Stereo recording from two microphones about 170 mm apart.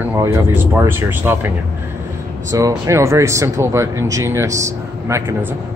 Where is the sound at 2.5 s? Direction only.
20° right (ahead or behind).